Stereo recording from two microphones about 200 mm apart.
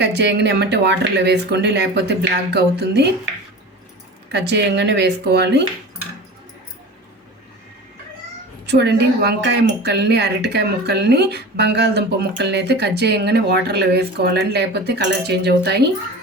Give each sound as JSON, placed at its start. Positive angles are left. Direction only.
{"t": 0.0, "sound": "speech", "side_deg": -60}
{"t": 4.3, "sound": "speech", "side_deg": -60}
{"t": 8.6, "sound": "speech", "side_deg": -60}